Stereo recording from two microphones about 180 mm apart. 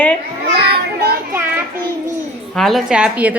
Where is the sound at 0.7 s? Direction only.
60° right (ahead or behind).